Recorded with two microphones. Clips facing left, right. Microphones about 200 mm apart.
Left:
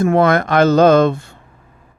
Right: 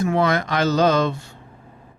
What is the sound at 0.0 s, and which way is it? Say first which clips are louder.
Speech: left 6 dB; 55° left (ahead or behind).